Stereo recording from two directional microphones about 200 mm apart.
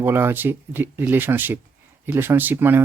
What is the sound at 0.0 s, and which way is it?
Speech, 10° right (ahead or behind).